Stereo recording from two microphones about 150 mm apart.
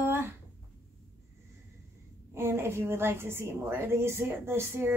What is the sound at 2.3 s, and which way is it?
A woman's voice, 15° right (ahead or behind).